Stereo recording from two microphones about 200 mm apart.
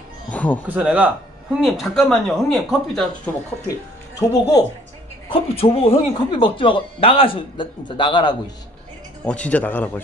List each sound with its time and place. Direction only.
0.3 s music: 5° left (ahead or behind)
0.7 s speech: 5° right (ahead or behind)
4.2 s speech: 20° left (ahead or behind)
5.3 s speech: 30° left (ahead or behind)
9.2 s speech: 5° left (ahead or behind)